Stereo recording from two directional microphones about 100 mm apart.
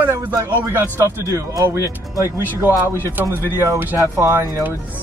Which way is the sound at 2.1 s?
25° right (ahead or behind).